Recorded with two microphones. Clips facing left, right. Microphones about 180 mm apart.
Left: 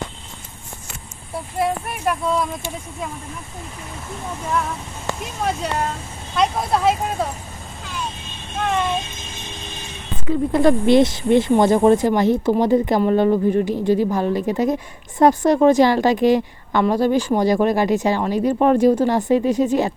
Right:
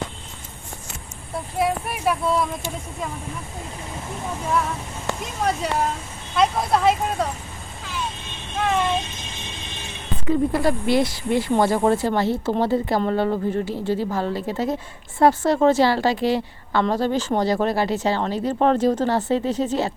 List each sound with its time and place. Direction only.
1.5 s speech: centre (ahead or behind)
6.3 s speech: centre (ahead or behind)
8.5 s a sound: centre (ahead or behind)
10.5 s a woman's voice: 20° left (ahead or behind)